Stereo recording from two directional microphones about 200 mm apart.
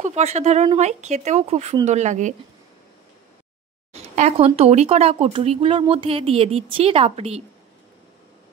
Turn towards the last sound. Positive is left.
turn(degrees=-30)  # may be behind; listen again after turning